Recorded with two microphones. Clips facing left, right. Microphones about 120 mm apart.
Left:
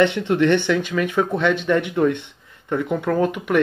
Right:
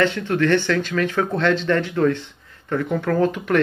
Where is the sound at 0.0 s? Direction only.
20° left (ahead or behind).